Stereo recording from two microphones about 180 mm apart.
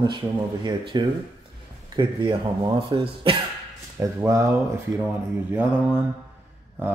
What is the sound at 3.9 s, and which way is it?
Speech, 15° right (ahead or behind).